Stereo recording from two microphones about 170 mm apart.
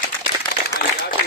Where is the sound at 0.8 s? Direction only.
70° left (ahead or behind).